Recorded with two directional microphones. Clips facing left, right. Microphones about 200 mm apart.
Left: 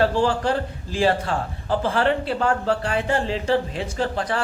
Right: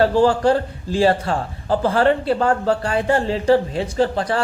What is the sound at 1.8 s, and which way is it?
Speech, 40° right (ahead or behind).